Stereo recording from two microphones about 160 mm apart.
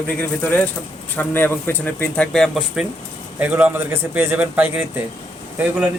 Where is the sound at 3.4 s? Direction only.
10° right (ahead or behind).